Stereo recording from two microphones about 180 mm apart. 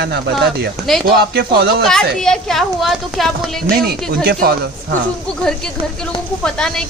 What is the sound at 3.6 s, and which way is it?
Speech, 60° right (ahead or behind).